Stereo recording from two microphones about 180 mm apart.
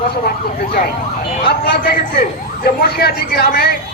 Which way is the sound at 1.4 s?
65° left (ahead or behind).